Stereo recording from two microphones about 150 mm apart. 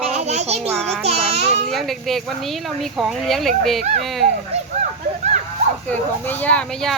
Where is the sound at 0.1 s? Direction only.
50° right (ahead or behind).